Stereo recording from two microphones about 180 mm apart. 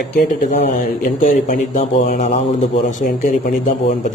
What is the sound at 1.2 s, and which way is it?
A man's voice, 45° left (ahead or behind).